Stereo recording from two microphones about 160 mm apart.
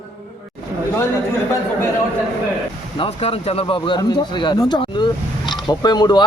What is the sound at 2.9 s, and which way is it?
Speech, 35° left (ahead or behind).